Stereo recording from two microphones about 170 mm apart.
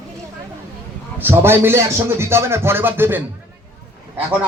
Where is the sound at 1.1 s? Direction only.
10° right (ahead or behind).